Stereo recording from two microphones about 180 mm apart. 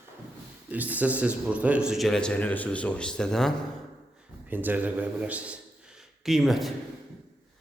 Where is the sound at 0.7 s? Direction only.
10° right (ahead or behind).